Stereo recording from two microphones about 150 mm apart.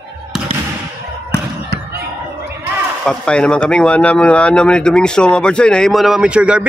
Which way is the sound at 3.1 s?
5° left (ahead or behind).